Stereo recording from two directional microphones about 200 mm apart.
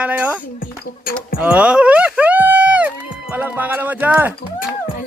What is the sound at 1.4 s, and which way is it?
Music, 5° right (ahead or behind).